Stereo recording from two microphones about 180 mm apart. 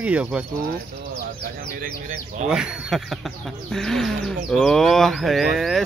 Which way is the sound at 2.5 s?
5° right (ahead or behind).